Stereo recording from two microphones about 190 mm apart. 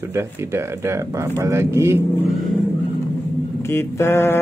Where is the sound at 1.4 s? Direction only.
15° right (ahead or behind).